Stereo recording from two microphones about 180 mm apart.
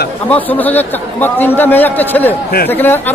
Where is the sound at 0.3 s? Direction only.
10° left (ahead or behind).